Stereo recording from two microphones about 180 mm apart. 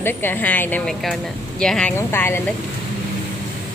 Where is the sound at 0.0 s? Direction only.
10° left (ahead or behind).